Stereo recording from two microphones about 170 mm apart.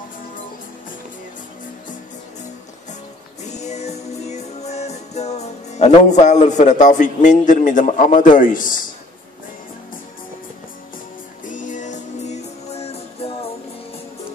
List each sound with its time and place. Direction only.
3.4 s music: 40° left (ahead or behind)
11.4 s music: 50° left (ahead or behind)